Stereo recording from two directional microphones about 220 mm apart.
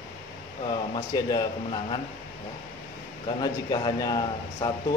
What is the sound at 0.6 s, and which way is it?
A man's voice, 20° left (ahead or behind).